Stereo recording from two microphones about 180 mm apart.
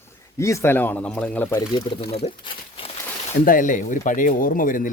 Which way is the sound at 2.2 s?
40° left (ahead or behind).